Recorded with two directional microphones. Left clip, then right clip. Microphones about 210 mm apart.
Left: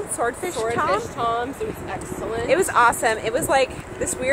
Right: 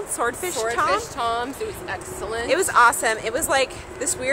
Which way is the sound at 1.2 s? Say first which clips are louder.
Left 1 dB; 20° right (ahead or behind).